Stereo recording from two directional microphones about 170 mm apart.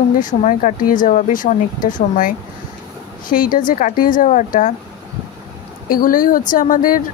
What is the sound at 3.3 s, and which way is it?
Speech, 55° left (ahead or behind).